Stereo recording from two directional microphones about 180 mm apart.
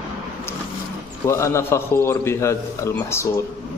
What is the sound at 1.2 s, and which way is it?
Speech, 15° left (ahead or behind).